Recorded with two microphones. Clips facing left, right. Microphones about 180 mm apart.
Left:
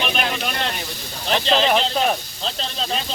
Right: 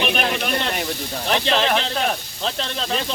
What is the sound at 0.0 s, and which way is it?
Snake, 60° right (ahead or behind).